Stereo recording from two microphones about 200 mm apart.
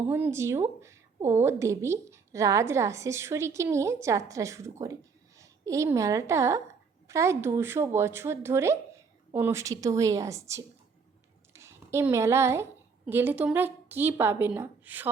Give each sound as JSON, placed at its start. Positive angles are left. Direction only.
{"t": 0.1, "sound": "a woman's voice", "side_deg": -10}